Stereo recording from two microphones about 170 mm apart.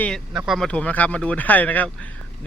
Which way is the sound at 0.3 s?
Centre (ahead or behind).